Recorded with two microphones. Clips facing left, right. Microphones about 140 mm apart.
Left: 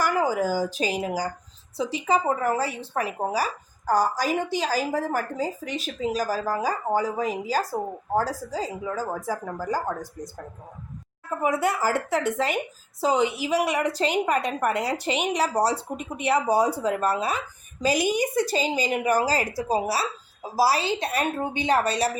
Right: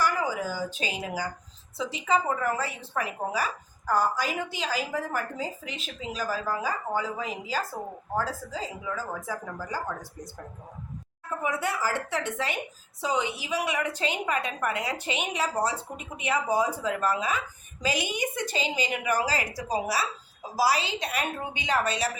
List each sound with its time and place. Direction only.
0.0 s a woman's voice: 45° left (ahead or behind)
11.4 s a woman's voice: 45° left (ahead or behind)